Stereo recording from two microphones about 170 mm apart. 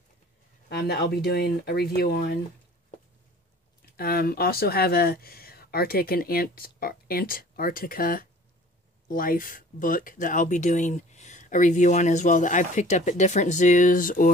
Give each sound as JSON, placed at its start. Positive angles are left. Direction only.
{"t": 0.7, "sound": "speech", "side_deg": 70}
{"t": 3.9, "sound": "speech", "side_deg": 65}